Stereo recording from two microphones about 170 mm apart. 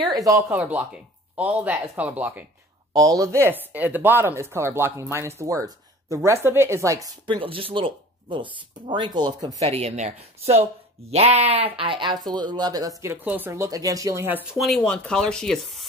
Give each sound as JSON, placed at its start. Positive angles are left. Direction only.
{"t": 0.0, "sound": "speech", "side_deg": -20}
{"t": 2.9, "sound": "speech", "side_deg": -20}
{"t": 9.6, "sound": "speech", "side_deg": -35}
{"t": 14.6, "sound": "speech", "side_deg": 0}